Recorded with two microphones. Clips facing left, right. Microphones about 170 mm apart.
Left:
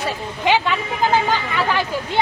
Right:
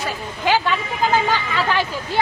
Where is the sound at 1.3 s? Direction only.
5° right (ahead or behind).